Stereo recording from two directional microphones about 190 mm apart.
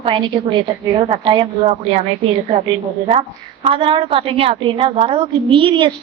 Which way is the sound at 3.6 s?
25° right (ahead or behind).